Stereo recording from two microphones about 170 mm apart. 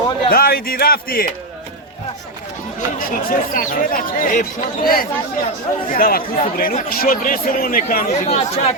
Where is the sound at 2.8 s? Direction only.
55° left (ahead or behind).